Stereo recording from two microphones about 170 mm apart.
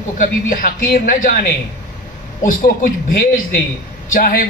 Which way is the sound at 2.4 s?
55° left (ahead or behind).